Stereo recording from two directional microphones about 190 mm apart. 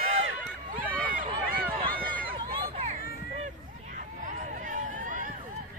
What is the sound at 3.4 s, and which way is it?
Hubbub, 40° right (ahead or behind).